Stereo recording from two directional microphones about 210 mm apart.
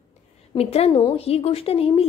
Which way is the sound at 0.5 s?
30° left (ahead or behind).